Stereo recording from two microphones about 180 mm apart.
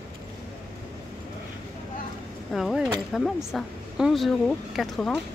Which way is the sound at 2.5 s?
Centre (ahead or behind).